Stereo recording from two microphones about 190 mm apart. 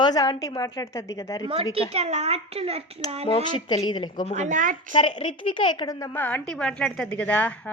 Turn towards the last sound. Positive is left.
turn(degrees=10)  # may be behind; listen again after turning